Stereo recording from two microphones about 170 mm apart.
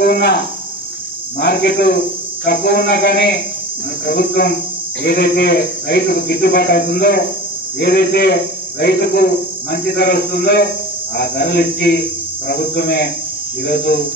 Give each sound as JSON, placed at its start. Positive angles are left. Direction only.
{"t": 0.0, "sound": "speech", "side_deg": 75}
{"t": 1.4, "sound": "speech", "side_deg": 70}